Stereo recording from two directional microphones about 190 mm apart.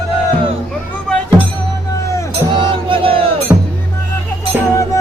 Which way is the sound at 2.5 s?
25° right (ahead or behind).